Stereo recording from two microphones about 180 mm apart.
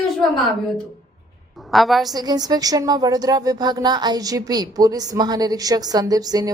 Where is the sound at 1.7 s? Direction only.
Centre (ahead or behind).